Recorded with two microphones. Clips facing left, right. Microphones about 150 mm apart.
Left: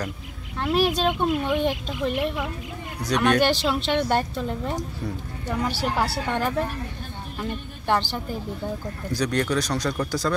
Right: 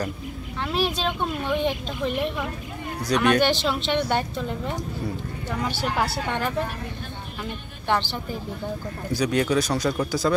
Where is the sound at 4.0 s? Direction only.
40° left (ahead or behind).